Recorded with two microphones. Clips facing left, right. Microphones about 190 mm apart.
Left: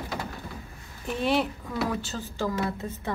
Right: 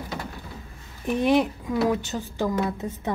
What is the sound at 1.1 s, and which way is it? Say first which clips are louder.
Speech: right 5 dB; 15° right (ahead or behind).